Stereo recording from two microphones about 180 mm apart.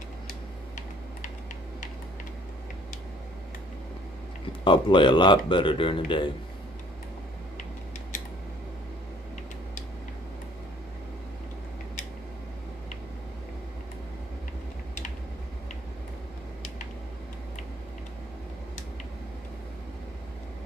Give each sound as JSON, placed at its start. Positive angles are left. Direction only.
{"t": 4.5, "sound": "speech", "side_deg": 30}